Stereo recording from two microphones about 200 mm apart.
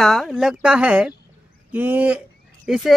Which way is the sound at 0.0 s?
Centre (ahead or behind).